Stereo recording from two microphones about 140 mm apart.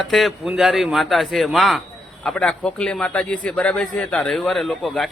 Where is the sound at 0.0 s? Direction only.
Centre (ahead or behind).